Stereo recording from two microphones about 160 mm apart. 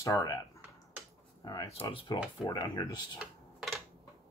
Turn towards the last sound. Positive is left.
turn(degrees=0)  # may be behind; listen again after turning